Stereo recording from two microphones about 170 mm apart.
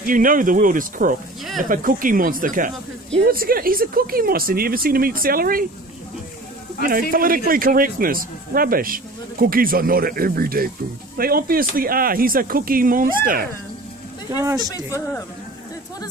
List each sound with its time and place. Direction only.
0.0 s speech: 55° right (ahead or behind)
6.8 s speech: 55° right (ahead or behind)
14.6 s speech: 20° left (ahead or behind)